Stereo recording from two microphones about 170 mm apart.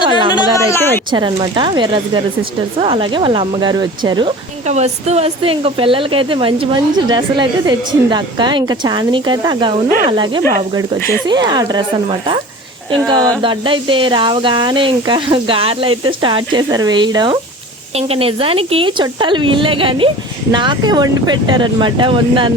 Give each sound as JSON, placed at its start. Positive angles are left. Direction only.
{"t": 0.3, "sound": "speech", "side_deg": 15}
{"t": 1.1, "sound": "speech", "side_deg": -30}
{"t": 4.6, "sound": "a woman's voice", "side_deg": -40}